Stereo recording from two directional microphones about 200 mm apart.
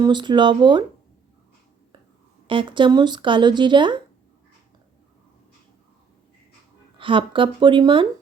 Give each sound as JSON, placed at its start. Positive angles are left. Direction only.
{"t": 0.0, "sound": "speech", "side_deg": -20}
{"t": 2.5, "sound": "speech", "side_deg": -25}
{"t": 7.0, "sound": "speech", "side_deg": -25}